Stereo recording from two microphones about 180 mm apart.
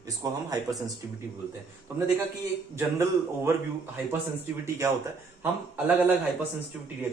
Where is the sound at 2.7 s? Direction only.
15° right (ahead or behind).